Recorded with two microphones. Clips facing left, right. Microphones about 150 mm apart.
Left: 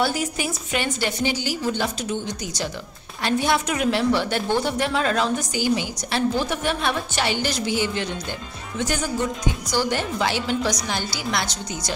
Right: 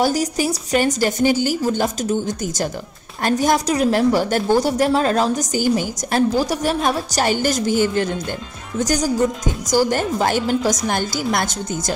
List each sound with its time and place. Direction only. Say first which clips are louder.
0.0 s a woman's voice: right 5 dB; 40° right (ahead or behind)